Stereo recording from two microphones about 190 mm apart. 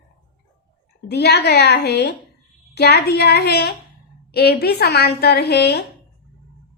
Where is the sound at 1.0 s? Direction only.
60° left (ahead or behind).